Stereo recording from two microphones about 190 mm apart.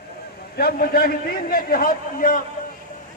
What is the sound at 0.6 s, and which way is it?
A man's voice, 55° left (ahead or behind).